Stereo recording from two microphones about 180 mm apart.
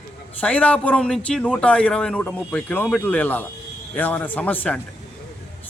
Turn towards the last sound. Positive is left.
turn(degrees=10)  # may be behind; listen again after turning